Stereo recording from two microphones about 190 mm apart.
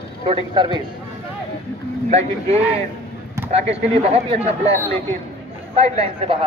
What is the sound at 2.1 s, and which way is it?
Speech, 35° right (ahead or behind).